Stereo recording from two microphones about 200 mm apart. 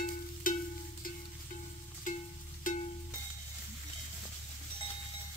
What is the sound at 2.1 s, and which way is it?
Music, 40° left (ahead or behind).